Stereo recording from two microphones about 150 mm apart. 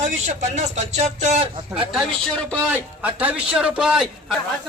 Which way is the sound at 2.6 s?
10° right (ahead or behind).